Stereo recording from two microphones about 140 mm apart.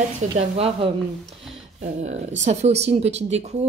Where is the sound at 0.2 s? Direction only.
55° right (ahead or behind).